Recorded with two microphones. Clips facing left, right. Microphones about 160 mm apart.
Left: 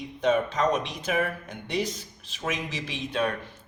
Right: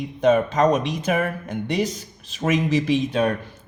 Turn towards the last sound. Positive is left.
turn(degrees=-45)  # may be behind; listen again after turning